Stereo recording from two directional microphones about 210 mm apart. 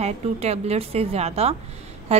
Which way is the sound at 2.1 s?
30° right (ahead or behind).